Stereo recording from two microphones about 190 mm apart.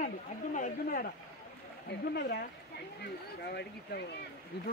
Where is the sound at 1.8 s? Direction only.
60° left (ahead or behind).